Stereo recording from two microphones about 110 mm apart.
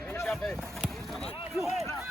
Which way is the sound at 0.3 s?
5° left (ahead or behind).